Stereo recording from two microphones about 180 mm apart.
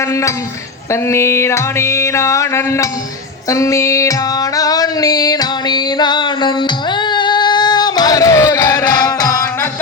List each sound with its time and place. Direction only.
1.0 s music: 15° left (ahead or behind)
3.5 s a sound: 15° left (ahead or behind)
7.1 s music: 25° left (ahead or behind)